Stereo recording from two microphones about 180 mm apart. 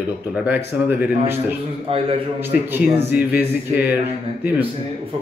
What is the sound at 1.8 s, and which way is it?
Speech, 35° right (ahead or behind).